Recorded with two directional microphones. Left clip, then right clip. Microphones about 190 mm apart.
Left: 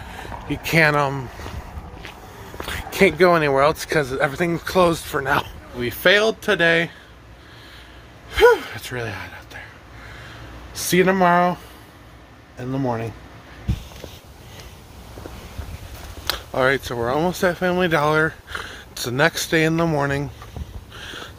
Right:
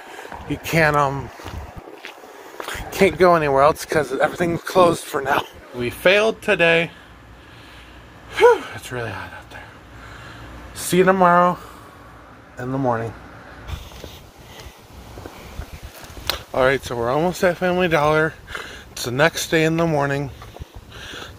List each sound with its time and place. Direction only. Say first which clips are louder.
0.5 s speech: left 1 dB; 10° left (ahead or behind)
2.9 s speech: right 1 dB; 10° left (ahead or behind)
5.8 s speech: even; 15° left (ahead or behind)
8.3 s gasp: even; 15° left (ahead or behind)
10.7 s speech: right 2 dB; 15° left (ahead or behind)
16.3 s speech: right 1 dB; 5° left (ahead or behind)
20.9 s a sound: even; 15° left (ahead or behind)